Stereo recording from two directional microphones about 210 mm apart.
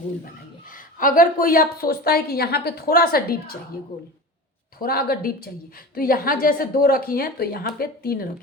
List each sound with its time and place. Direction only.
0.7 s a woman's voice: 40° left (ahead or behind)
4.8 s a woman's voice: 45° left (ahead or behind)